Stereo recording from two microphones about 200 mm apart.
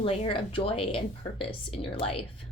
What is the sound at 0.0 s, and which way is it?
A woman's voice, 25° left (ahead or behind).